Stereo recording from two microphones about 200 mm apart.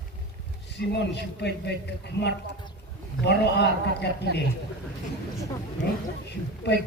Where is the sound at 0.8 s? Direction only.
60° left (ahead or behind).